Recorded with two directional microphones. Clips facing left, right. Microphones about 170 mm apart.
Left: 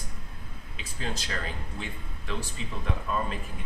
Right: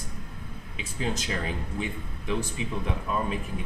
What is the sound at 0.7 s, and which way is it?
Speech, 20° right (ahead or behind).